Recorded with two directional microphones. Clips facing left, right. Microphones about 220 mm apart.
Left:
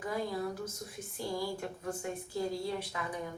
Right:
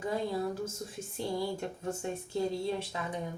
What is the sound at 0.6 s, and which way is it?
Speech, 25° right (ahead or behind).